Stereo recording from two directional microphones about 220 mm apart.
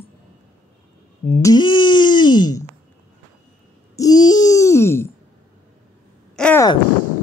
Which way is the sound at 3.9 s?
15° left (ahead or behind).